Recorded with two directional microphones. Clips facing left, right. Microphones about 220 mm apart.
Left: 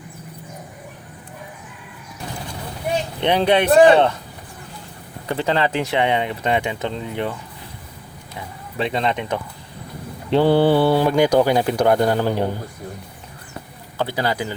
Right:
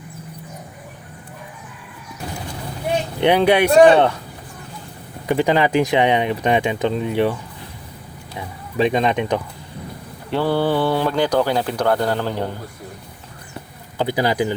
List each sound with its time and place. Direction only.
3.2 s speech: 10° right (ahead or behind)
5.2 s speech: 15° right (ahead or behind)
8.8 s speech: 15° right (ahead or behind)
10.3 s speech: 15° left (ahead or behind)
14.0 s speech: 15° right (ahead or behind)